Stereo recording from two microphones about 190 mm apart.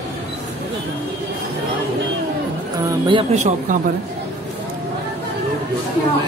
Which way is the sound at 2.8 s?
25° right (ahead or behind).